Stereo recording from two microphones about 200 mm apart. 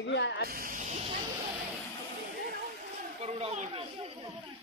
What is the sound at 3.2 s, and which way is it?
Speech, 30° right (ahead or behind).